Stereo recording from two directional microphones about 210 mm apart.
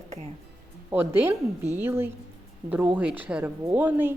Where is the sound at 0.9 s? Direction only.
10° right (ahead or behind).